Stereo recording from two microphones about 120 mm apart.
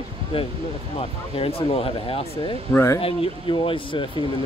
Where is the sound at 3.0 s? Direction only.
50° left (ahead or behind).